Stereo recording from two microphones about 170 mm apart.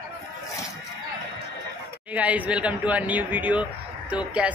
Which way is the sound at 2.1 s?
10° right (ahead or behind).